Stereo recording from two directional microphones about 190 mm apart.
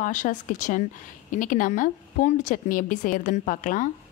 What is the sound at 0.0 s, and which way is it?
A woman's voice, 40° left (ahead or behind).